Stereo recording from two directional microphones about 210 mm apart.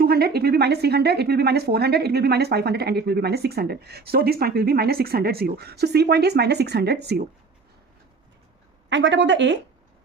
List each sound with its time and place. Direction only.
0.0 s a woman's voice: 50° right (ahead or behind)
8.9 s a woman's voice: 60° right (ahead or behind)